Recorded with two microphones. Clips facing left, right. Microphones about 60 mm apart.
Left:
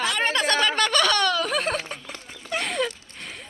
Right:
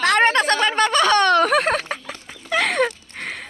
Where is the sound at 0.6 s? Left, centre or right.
Right.